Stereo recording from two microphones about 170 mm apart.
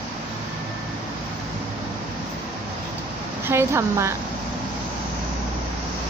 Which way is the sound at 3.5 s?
15° right (ahead or behind).